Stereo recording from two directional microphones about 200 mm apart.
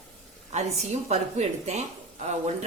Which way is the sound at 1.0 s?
35° right (ahead or behind).